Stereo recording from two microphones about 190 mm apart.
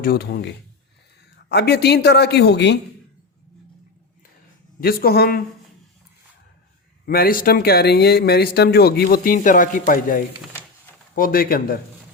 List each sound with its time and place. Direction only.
0.0 s speech: 55° left (ahead or behind)
4.8 s speech: 50° left (ahead or behind)
7.0 s speech: 55° left (ahead or behind)